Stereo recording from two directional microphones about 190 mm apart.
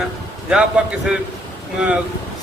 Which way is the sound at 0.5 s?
5° right (ahead or behind).